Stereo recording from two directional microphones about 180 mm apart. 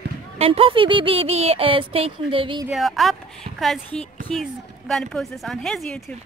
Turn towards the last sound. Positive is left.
turn(degrees=5)  # may be behind; listen again after turning